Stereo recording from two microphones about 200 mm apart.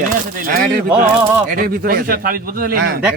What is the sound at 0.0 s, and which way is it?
Speech, 45° right (ahead or behind).